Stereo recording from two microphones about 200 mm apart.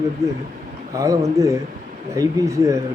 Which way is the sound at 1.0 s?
15° right (ahead or behind).